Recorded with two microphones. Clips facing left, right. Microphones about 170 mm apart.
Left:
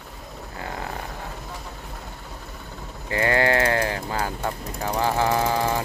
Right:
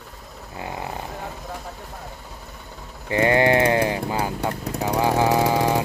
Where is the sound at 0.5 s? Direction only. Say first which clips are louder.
Right 2 dB; 20° right (ahead or behind).